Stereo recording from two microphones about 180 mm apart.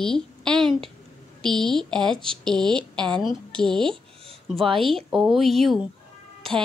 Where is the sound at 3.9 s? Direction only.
30° right (ahead or behind).